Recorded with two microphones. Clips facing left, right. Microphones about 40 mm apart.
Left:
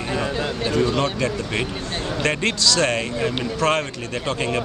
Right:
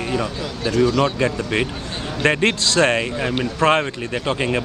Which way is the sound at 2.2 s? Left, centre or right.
Right.